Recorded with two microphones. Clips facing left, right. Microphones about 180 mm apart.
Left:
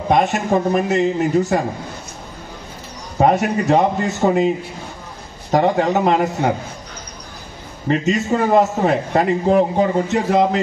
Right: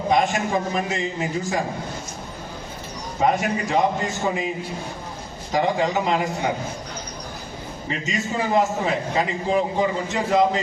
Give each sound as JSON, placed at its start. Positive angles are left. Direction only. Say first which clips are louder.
{"t": 0.1, "sound": "a man's voice", "louder": "left 5 dB", "side_deg": 60}
{"t": 3.2, "sound": "a man's voice", "louder": "left 6 dB", "side_deg": 65}
{"t": 5.5, "sound": "a man's voice", "louder": "left 5 dB", "side_deg": 60}
{"t": 7.9, "sound": "a man's voice", "louder": "left 9 dB", "side_deg": 60}